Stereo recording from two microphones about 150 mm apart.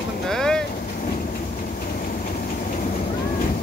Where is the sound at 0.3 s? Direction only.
5° left (ahead or behind).